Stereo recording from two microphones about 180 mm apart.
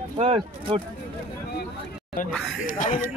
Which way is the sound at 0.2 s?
35° right (ahead or behind).